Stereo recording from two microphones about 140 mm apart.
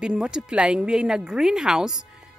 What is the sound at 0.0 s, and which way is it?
Speech, 5° right (ahead or behind).